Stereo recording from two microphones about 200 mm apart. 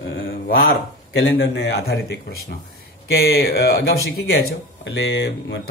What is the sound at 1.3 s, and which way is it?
Speech, 60° left (ahead or behind).